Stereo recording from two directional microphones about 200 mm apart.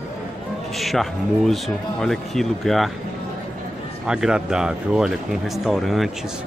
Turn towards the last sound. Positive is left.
turn(degrees=0)  # may be behind; listen again after turning